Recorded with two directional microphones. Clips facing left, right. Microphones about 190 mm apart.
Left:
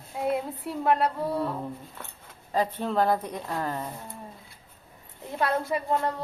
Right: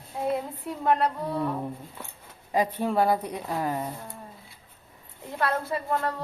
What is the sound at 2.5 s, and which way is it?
A woman's voice, 15° right (ahead or behind).